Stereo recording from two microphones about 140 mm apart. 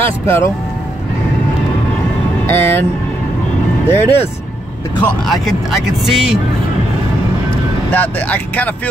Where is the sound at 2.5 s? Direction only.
15° left (ahead or behind).